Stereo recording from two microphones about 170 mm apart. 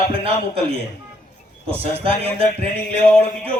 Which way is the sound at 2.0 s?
30° right (ahead or behind).